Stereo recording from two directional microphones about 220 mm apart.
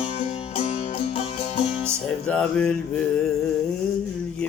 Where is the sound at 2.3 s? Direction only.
5° left (ahead or behind).